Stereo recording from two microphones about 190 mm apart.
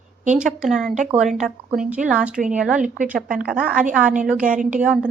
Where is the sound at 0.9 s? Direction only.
40° right (ahead or behind).